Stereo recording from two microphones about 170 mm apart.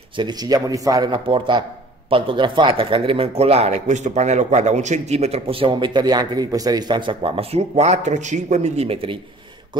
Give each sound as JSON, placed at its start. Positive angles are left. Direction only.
{"t": 0.2, "sound": "speech", "side_deg": -25}